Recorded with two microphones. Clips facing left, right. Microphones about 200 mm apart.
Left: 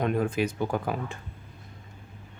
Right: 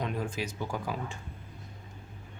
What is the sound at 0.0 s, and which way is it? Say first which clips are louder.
Speech: left 8 dB; 55° left (ahead or behind).